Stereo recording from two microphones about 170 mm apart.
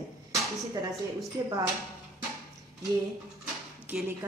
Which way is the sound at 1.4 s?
15° right (ahead or behind).